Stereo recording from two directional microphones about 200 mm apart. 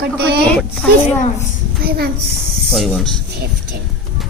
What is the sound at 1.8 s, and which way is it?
Speech, 50° right (ahead or behind).